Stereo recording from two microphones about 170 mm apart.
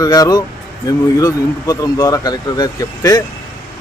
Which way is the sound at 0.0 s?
20° left (ahead or behind).